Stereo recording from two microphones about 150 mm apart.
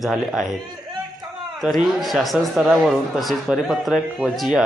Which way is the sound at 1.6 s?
Centre (ahead or behind).